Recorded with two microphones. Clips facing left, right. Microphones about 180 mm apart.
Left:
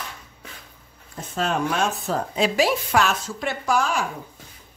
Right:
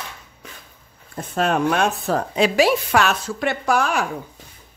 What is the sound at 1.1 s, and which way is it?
A woman's voice, 60° right (ahead or behind).